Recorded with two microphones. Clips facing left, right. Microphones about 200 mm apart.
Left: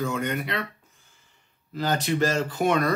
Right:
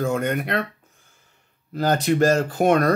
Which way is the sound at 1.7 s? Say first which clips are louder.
Right 5 dB; 50° right (ahead or behind).